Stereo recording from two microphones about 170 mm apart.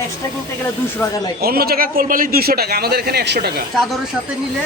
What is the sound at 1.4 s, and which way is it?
A man's voice, 65° right (ahead or behind).